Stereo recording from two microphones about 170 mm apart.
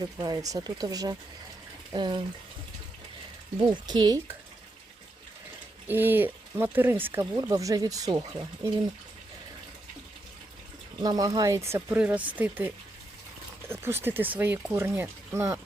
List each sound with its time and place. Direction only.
0.2 s speech: 20° right (ahead or behind)
3.6 s speech: 25° right (ahead or behind)
5.9 s speech: 10° right (ahead or behind)
11.0 s speech: 20° right (ahead or behind)